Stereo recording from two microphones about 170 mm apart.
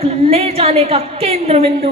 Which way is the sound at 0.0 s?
40° right (ahead or behind).